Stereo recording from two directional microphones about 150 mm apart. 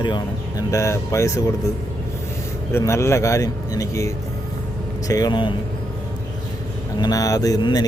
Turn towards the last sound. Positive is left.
turn(degrees=25)  # may be behind; listen again after turning